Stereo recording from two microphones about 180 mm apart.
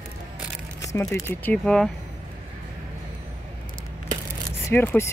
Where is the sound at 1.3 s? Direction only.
5° left (ahead or behind).